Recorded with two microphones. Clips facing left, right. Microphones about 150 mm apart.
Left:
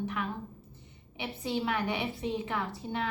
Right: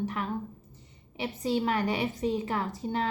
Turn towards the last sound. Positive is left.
turn(degrees=-40)  # may be behind; listen again after turning